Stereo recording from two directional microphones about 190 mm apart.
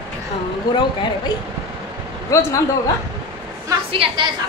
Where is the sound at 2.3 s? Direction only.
15° left (ahead or behind).